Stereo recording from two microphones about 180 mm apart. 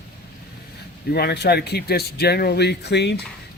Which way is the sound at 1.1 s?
65° left (ahead or behind).